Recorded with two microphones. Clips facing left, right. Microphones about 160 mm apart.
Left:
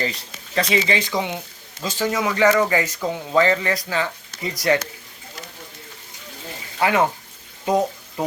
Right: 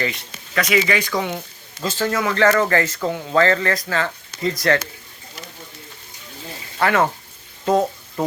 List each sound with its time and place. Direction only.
0.0 s speech: 35° left (ahead or behind); by 4.8 s 15° left (ahead or behind)
6.7 s speech: 15° left (ahead or behind)